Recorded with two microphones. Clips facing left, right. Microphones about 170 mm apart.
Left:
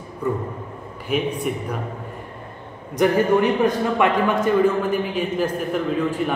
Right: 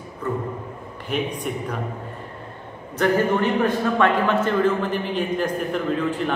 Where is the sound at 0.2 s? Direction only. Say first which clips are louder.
Left 2 dB; 10° left (ahead or behind).